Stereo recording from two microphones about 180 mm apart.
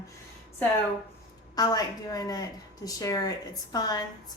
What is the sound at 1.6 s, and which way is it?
A woman's voice, 20° left (ahead or behind).